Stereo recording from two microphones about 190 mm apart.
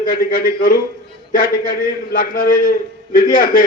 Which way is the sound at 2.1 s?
45° left (ahead or behind).